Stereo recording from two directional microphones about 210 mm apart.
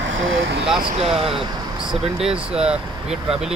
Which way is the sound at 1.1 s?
25° right (ahead or behind).